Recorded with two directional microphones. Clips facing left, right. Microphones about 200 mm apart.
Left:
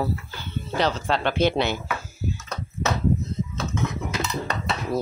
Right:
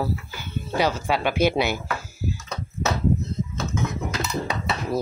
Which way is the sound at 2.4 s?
10° right (ahead or behind).